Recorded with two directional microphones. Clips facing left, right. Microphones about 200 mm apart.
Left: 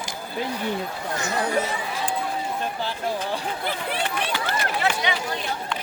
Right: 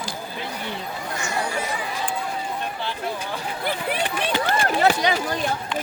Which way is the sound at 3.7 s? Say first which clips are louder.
Right 4 dB; 15° right (ahead or behind).